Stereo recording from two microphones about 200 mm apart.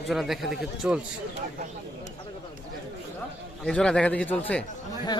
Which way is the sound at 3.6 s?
5° left (ahead or behind).